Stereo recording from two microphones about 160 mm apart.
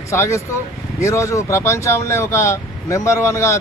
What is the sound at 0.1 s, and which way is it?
Speech, 15° left (ahead or behind).